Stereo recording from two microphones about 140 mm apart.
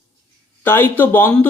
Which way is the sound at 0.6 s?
15° left (ahead or behind).